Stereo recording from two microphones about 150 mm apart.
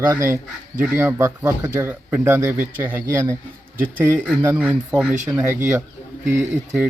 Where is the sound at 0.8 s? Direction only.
15° right (ahead or behind).